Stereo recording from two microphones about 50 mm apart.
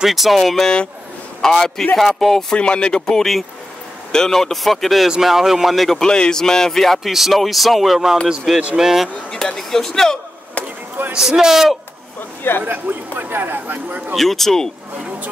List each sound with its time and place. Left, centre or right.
0.0 s a man's voice: centre
2.5 s a man's voice: centre
7.0 s a man's voice: centre
9.3 s a man's voice: centre
11.1 s a man's voice: centre
12.6 s a man's voice: right
14.1 s speech: centre